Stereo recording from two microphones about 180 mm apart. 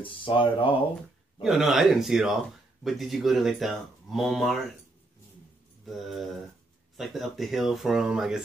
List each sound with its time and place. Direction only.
0.0 s speech: 30° left (ahead or behind)
1.4 s speech: centre (ahead or behind)
5.9 s speech: centre (ahead or behind)